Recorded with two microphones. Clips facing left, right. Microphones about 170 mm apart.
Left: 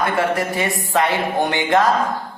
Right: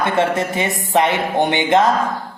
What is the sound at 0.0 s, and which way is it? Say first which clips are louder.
A woman's voice: right 2 dB; 25° right (ahead or behind).